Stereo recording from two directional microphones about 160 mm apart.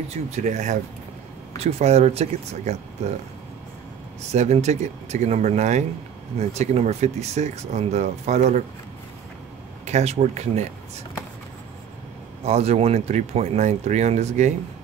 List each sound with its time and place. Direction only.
0.3 s speech: 50° right (ahead or behind)
4.3 s speech: 45° right (ahead or behind)
9.8 s speech: 45° right (ahead or behind)
12.4 s speech: 40° right (ahead or behind)